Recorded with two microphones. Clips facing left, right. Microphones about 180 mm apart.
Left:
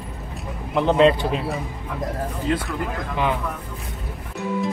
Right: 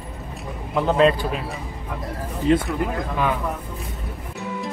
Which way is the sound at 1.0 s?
25° left (ahead or behind).